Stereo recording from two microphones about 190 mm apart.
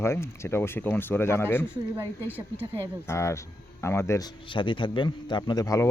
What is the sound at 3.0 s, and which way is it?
Speech, 15° left (ahead or behind).